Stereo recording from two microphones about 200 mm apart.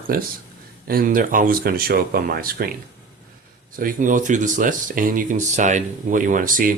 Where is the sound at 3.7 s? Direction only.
45° right (ahead or behind).